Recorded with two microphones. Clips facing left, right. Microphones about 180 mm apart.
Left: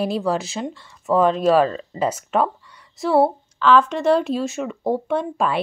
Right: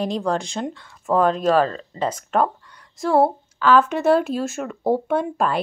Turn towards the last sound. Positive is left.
turn(degrees=0)  # may be behind; listen again after turning